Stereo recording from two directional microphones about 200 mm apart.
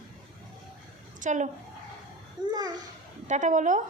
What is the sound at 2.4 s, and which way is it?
Babbling, 20° right (ahead or behind).